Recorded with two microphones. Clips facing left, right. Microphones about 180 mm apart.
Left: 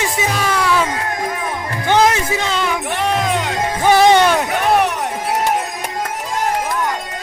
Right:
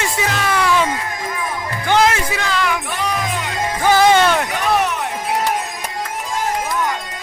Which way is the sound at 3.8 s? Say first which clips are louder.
Left 2 dB; 20° left (ahead or behind).